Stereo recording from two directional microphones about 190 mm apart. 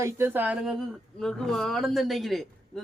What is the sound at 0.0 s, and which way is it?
Speech, 10° right (ahead or behind).